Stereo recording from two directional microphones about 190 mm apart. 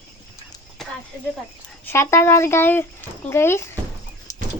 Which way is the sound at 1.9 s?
15° left (ahead or behind).